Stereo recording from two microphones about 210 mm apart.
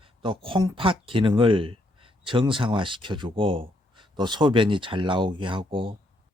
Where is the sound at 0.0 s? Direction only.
25° right (ahead or behind).